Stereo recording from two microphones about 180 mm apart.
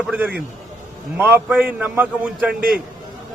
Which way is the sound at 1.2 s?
10° right (ahead or behind).